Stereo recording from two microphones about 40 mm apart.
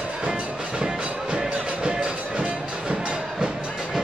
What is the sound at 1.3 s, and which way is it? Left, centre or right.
Music, right.